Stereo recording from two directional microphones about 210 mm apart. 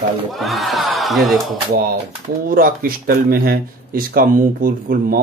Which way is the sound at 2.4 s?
45° right (ahead or behind).